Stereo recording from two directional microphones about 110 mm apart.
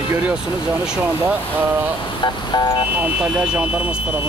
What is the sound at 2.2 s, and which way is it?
Speech, 45° left (ahead or behind).